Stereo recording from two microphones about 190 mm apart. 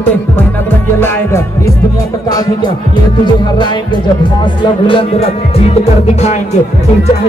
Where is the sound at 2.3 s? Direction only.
20° left (ahead or behind); by 6.3 s 35° left (ahead or behind).